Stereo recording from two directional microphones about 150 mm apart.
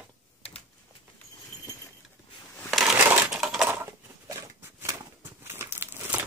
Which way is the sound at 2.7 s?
Centre (ahead or behind).